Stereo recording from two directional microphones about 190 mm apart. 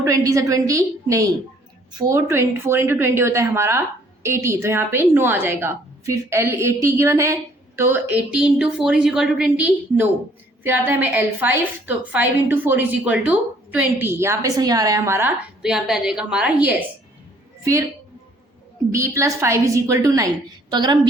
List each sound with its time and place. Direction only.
0.0 s a woman's voice: 15° right (ahead or behind)
18.9 s a woman's voice: 15° right (ahead or behind)